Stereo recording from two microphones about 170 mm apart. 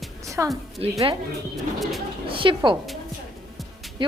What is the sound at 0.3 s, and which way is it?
Speech, 20° right (ahead or behind).